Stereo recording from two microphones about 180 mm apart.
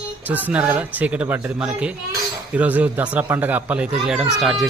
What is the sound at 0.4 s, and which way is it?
A child's voice, 10° right (ahead or behind).